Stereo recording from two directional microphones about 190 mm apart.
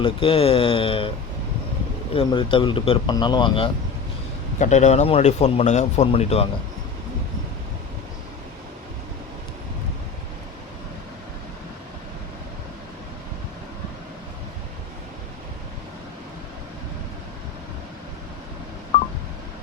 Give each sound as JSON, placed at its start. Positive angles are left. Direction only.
{"t": 0.0, "sound": "speech", "side_deg": 25}
{"t": 2.1, "sound": "speech", "side_deg": 25}
{"t": 4.6, "sound": "speech", "side_deg": 35}